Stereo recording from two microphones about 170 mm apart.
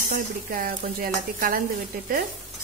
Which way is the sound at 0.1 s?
55° right (ahead or behind).